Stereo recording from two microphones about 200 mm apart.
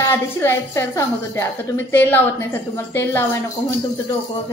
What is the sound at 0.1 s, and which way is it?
A woman's voice, 10° left (ahead or behind).